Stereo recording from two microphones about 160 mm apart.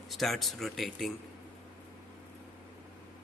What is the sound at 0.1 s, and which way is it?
A man's voice, centre (ahead or behind).